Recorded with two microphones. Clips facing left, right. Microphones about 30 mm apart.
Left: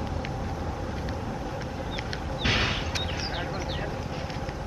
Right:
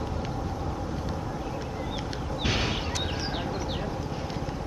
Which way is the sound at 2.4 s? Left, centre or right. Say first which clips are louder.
Left 3 dB; centre.